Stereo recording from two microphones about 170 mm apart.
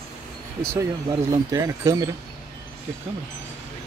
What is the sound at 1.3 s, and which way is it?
Speech, 20° right (ahead or behind).